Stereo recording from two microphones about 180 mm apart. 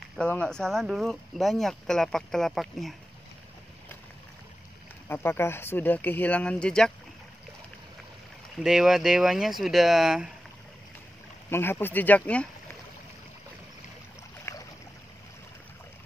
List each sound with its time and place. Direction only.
0.2 s speech: 5° left (ahead or behind)
5.0 s speech: 10° left (ahead or behind)
8.6 s speech: centre (ahead or behind)
11.5 s speech: 10° left (ahead or behind)
14.4 s boat: 15° left (ahead or behind)